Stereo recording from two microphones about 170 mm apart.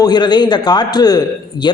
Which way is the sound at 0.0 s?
25° left (ahead or behind).